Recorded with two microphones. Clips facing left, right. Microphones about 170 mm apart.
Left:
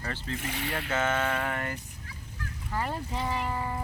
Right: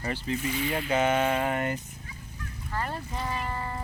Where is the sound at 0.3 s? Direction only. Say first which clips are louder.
Right 5 dB; 65° left (ahead or behind).